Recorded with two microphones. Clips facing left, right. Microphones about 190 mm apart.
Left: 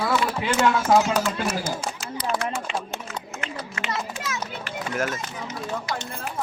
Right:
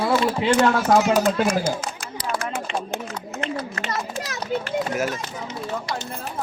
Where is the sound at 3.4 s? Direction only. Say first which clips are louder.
Right 6 dB; 40° right (ahead or behind).